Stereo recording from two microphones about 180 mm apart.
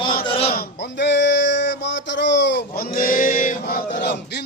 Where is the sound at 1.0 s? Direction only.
70° left (ahead or behind).